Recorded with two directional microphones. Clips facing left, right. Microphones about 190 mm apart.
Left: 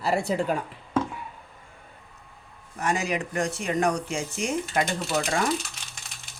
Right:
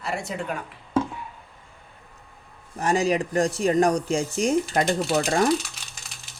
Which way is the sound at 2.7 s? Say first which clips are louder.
Right 5 dB; 30° right (ahead or behind).